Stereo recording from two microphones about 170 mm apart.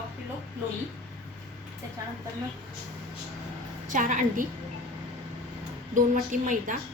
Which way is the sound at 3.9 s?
50° right (ahead or behind).